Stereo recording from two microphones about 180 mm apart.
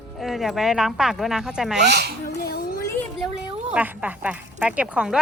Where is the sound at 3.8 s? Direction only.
10° right (ahead or behind).